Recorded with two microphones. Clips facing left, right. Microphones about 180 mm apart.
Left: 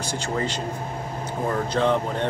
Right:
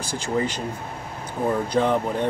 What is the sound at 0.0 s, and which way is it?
Speech, 10° right (ahead or behind).